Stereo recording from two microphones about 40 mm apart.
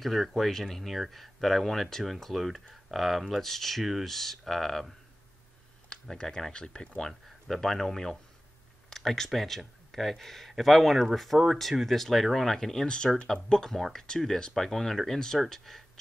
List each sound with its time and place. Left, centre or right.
0.0 s speech: centre
6.0 s speech: centre
7.4 s speech: centre
12.8 s speech: left; by 15.1 s centre
15.1 s speech: centre